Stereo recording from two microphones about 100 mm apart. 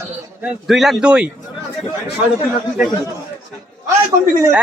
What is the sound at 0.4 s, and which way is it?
Speech, 5° right (ahead or behind).